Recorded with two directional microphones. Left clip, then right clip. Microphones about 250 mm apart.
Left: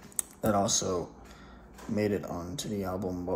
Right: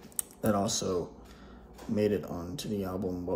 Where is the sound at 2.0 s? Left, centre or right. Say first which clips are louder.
Right 2 dB; centre.